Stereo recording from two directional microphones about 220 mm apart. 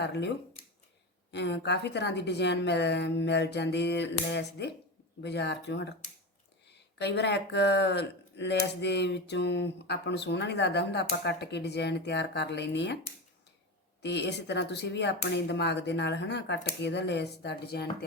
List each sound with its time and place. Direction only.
0.0 s speech: 50° left (ahead or behind)
1.3 s speech: 50° left (ahead or behind)
14.0 s speech: 50° left (ahead or behind)